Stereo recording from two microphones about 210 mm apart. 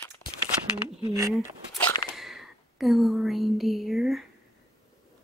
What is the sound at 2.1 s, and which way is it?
Speech, centre (ahead or behind).